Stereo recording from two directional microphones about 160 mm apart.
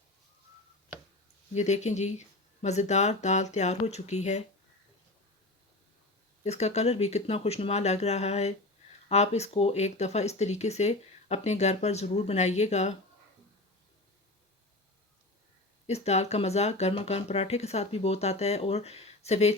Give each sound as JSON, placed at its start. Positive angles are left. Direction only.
{"t": 1.5, "sound": "speech", "side_deg": 45}
{"t": 6.4, "sound": "speech", "side_deg": 45}
{"t": 15.9, "sound": "speech", "side_deg": 40}